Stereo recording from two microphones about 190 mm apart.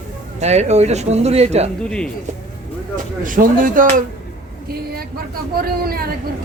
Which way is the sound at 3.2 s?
45° right (ahead or behind).